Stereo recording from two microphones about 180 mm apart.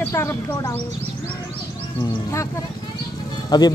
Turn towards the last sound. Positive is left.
turn(degrees=20)  # may be behind; listen again after turning